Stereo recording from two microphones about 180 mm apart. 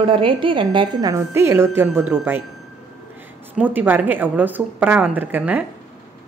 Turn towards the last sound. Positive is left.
turn(degrees=-10)  # may be behind; listen again after turning